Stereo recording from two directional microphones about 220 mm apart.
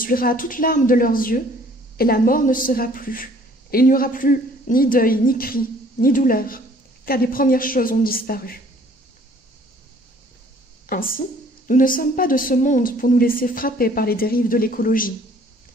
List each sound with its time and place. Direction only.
0.0 s a woman's voice: 40° left (ahead or behind)
10.9 s a woman's voice: 40° left (ahead or behind)